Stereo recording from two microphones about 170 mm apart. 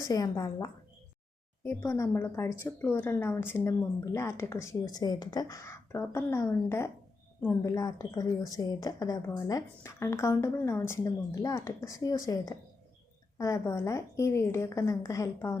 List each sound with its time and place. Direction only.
0.0 s a woman's voice: 20° left (ahead or behind)